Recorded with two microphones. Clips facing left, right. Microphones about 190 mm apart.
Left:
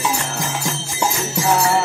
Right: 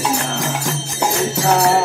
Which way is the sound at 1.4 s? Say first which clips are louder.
Right 2 dB; 40° right (ahead or behind).